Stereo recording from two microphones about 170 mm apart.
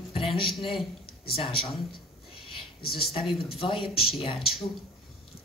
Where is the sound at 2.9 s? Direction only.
35° left (ahead or behind).